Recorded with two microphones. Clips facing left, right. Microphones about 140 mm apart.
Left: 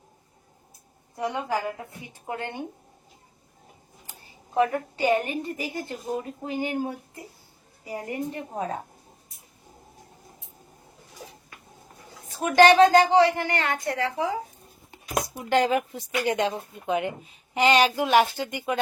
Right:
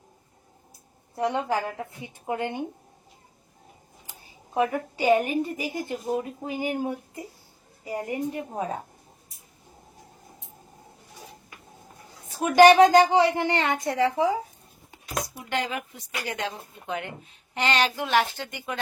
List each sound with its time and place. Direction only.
1.1 s a woman's voice: 20° right (ahead or behind)
4.5 s a woman's voice: 15° right (ahead or behind)
7.9 s speech: 20° right (ahead or behind)
12.5 s a woman's voice: 15° right (ahead or behind)
15.4 s speech: 35° left (ahead or behind)
16.2 s a woman's voice: 20° left (ahead or behind)